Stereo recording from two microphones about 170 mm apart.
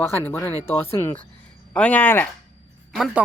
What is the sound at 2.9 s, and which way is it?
Speech, centre (ahead or behind).